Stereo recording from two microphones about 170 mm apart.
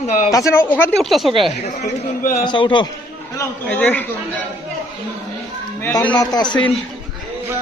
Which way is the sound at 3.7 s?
10° left (ahead or behind).